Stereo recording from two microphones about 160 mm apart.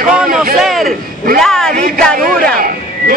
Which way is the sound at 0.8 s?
65° right (ahead or behind).